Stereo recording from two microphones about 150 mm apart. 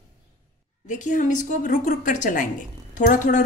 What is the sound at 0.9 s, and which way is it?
A woman's voice, 55° left (ahead or behind).